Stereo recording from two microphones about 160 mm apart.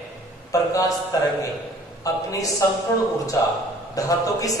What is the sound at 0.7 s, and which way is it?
Speech, 20° left (ahead or behind).